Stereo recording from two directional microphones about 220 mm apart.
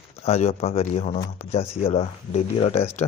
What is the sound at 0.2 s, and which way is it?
Speech, 30° left (ahead or behind).